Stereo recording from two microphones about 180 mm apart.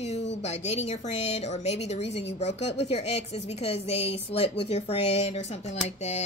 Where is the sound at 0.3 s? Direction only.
35° left (ahead or behind).